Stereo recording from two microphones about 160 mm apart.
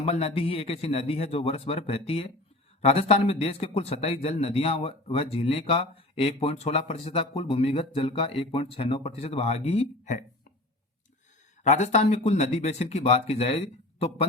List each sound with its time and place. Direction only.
0.0 s a man's voice: 40° left (ahead or behind)
11.6 s speech: 45° left (ahead or behind)